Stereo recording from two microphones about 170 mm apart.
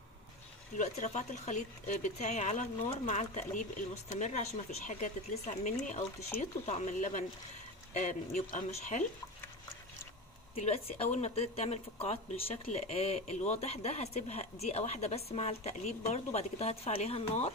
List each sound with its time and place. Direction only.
0.7 s speech: 45° left (ahead or behind)
10.5 s speech: 35° left (ahead or behind)